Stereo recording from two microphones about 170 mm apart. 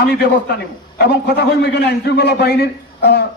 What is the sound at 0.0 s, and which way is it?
A man's voice, 75° left (ahead or behind).